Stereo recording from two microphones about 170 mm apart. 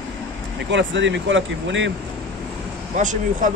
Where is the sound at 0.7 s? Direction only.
90° right.